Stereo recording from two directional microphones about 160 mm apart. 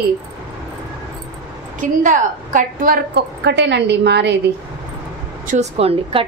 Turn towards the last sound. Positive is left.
turn(degrees=-40)  # may be behind; listen again after turning